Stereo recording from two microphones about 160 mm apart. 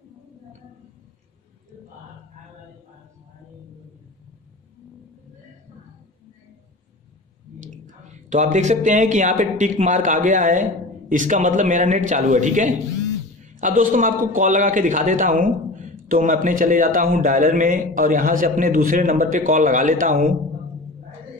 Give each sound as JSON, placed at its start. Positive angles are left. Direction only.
{"t": 7.8, "sound": "speech", "side_deg": -50}